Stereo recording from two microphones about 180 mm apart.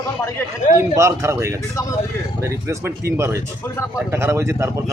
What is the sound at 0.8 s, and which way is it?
Speech, 15° right (ahead or behind).